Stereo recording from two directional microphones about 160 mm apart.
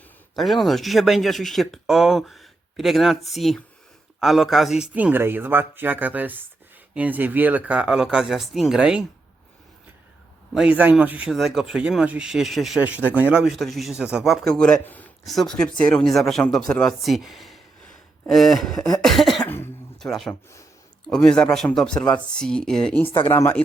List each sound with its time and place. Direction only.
0.3 s speech: centre (ahead or behind)
10.5 s speech: 5° right (ahead or behind)
19.0 s cough: centre (ahead or behind)
19.5 s a sound: 15° left (ahead or behind)
20.0 s speech: centre (ahead or behind)
23.0 s speech: 35° left (ahead or behind)
23.3 s speech: 10° left (ahead or behind)